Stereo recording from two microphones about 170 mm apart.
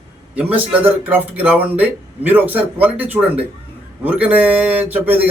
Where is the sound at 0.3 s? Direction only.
10° right (ahead or behind).